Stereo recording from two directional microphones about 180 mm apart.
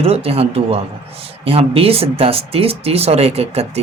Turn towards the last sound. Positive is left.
turn(degrees=-35)  # may be behind; listen again after turning